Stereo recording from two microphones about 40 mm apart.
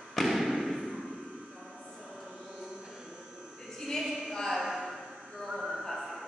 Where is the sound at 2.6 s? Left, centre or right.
Centre.